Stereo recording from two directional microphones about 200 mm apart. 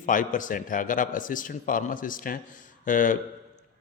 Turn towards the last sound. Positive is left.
turn(degrees=40)  # may be behind; listen again after turning